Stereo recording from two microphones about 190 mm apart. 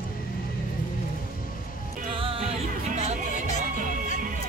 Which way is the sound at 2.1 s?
30° right (ahead or behind).